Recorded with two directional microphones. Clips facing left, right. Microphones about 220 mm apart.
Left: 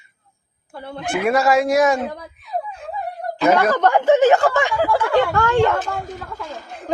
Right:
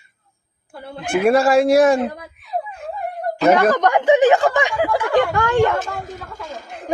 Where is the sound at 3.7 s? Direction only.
15° right (ahead or behind).